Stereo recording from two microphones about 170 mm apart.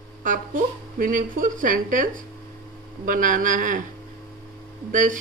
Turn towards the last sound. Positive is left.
turn(degrees=-50)  # may be behind; listen again after turning